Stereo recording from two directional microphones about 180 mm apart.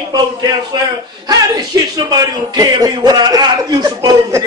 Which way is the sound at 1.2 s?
20° right (ahead or behind).